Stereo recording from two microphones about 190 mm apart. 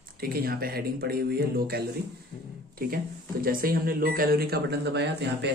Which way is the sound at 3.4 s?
50° right (ahead or behind).